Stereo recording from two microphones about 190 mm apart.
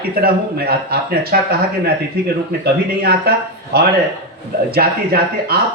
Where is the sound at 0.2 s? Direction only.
55° right (ahead or behind).